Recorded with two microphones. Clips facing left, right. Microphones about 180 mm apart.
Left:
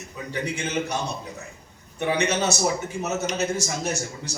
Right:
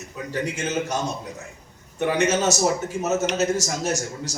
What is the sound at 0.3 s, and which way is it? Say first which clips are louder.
Speech: right 2 dB; 40° right (ahead or behind).